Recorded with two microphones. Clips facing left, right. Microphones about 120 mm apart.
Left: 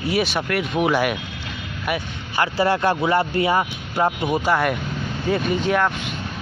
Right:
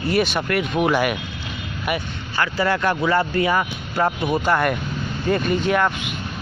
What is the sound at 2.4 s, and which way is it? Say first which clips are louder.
Speech: left 2 dB; 30° left (ahead or behind).